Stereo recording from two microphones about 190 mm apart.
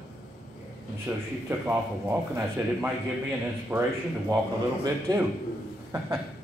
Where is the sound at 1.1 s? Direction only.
10° right (ahead or behind).